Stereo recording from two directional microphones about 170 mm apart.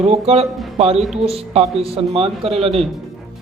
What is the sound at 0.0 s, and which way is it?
A man's voice, 35° right (ahead or behind).